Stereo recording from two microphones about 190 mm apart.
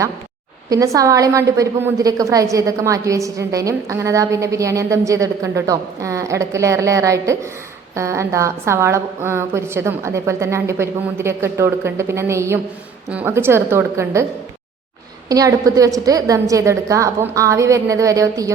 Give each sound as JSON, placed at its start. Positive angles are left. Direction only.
{"t": 0.7, "sound": "a woman's voice", "side_deg": -20}
{"t": 15.3, "sound": "a woman's voice", "side_deg": -20}